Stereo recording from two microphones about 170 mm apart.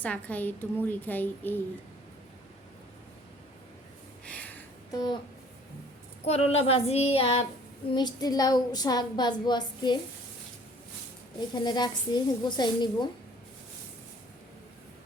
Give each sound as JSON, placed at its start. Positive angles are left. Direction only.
{"t": 0.0, "sound": "a woman's voice", "side_deg": 10}
{"t": 4.4, "sound": "music", "side_deg": 10}
{"t": 4.9, "sound": "a sound", "side_deg": 25}
{"t": 6.2, "sound": "child singing", "side_deg": 35}
{"t": 7.9, "sound": "speech", "side_deg": 25}
{"t": 11.3, "sound": "speech", "side_deg": 25}